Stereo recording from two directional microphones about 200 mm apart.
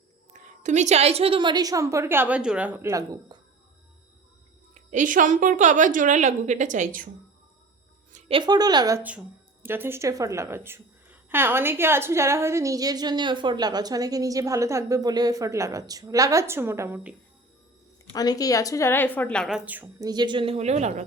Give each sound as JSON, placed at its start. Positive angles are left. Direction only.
{"t": 0.3, "sound": "a woman's voice", "side_deg": -35}
{"t": 4.7, "sound": "a woman's voice", "side_deg": -40}
{"t": 8.1, "sound": "a woman's voice", "side_deg": -25}
{"t": 18.1, "sound": "speech", "side_deg": 20}